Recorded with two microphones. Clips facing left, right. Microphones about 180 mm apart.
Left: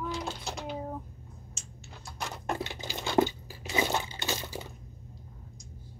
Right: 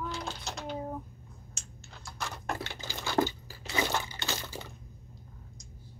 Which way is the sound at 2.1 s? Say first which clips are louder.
Left 2 dB; 20° left (ahead or behind).